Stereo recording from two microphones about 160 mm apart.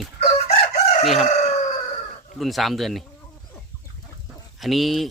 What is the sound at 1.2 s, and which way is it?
Fowl, 45° left (ahead or behind).